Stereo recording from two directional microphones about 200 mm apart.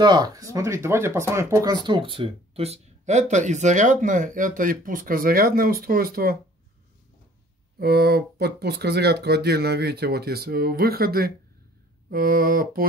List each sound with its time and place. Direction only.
0.0 s speech: 20° right (ahead or behind); by 6.3 s 50° right (ahead or behind)
7.8 s speech: 55° right (ahead or behind)